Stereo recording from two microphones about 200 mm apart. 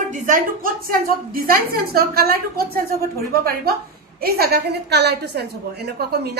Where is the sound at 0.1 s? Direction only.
40° right (ahead or behind).